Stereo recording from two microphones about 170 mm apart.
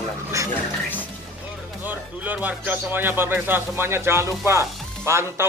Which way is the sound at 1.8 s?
10° right (ahead or behind).